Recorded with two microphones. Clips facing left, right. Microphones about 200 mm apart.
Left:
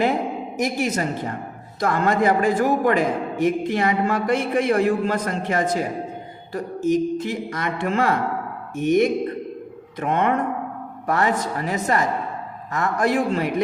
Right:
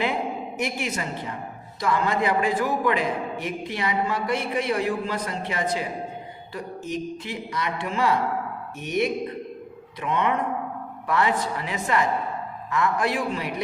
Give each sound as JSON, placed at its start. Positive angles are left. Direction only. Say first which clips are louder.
{"t": 0.0, "sound": "a woman's voice", "louder": "left 5 dB", "side_deg": 40}